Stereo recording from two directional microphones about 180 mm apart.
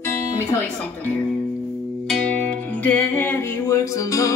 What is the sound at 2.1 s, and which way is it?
Music, 5° left (ahead or behind).